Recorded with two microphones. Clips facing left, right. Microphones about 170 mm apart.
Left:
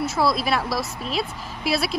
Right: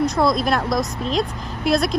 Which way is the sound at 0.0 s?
5° left (ahead or behind).